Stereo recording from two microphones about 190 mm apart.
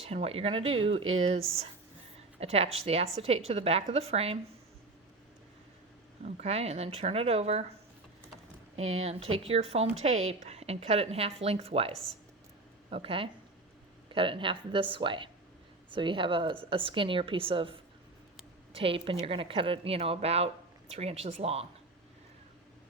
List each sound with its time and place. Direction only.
0.0 s speech: 30° right (ahead or behind)
6.2 s speech: 35° right (ahead or behind)
8.7 s a woman's voice: 35° right (ahead or behind)